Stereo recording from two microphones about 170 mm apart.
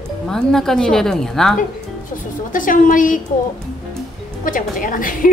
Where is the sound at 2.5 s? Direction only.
50° left (ahead or behind).